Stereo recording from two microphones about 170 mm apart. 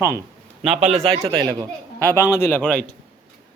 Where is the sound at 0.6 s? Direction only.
40° right (ahead or behind); by 1.6 s 25° right (ahead or behind).